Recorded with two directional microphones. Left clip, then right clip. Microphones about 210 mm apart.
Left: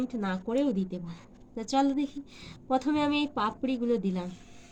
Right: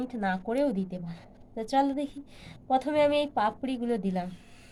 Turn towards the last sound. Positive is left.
turn(degrees=-40)  # may be behind; listen again after turning